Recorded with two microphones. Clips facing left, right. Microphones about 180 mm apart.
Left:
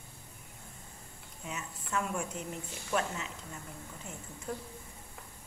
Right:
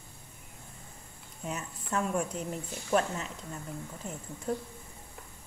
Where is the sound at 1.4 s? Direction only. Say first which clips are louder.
Right 4 dB; 35° right (ahead or behind).